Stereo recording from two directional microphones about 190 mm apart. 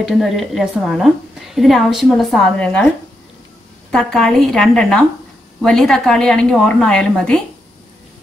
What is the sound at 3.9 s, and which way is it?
Speech, 5° left (ahead or behind).